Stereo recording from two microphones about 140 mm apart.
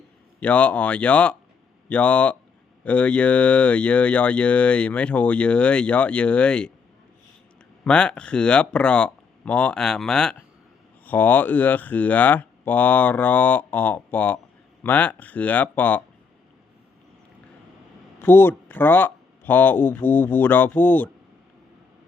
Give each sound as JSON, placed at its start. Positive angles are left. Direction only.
{"t": 0.3, "sound": "speech", "side_deg": 10}
{"t": 7.9, "sound": "speech", "side_deg": 5}
{"t": 18.2, "sound": "speech", "side_deg": 15}